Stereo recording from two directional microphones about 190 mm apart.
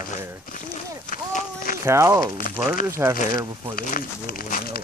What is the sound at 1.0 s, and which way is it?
Run, 45° left (ahead or behind).